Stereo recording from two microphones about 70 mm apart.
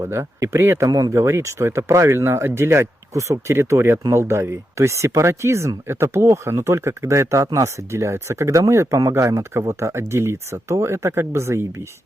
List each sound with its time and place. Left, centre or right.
0.0 s speech: right
0.9 s speech: right
1.1 s speech: right